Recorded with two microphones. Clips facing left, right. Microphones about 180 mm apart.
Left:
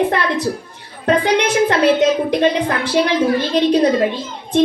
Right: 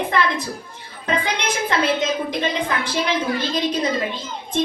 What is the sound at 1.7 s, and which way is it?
Speech, 60° left (ahead or behind).